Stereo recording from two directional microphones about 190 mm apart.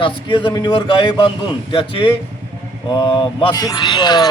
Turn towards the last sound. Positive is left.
turn(degrees=20)  # may be behind; listen again after turning